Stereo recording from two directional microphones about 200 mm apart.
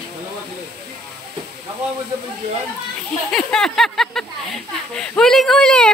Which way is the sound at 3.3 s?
Centre (ahead or behind).